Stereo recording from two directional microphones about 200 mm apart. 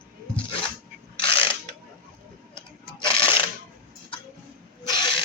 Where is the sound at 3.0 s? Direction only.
25° left (ahead or behind).